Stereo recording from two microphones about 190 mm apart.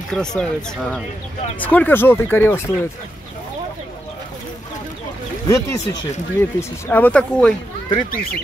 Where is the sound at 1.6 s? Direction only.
10° left (ahead or behind).